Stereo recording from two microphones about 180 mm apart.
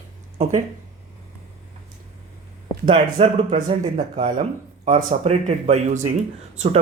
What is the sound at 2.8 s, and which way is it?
Speech, 30° right (ahead or behind).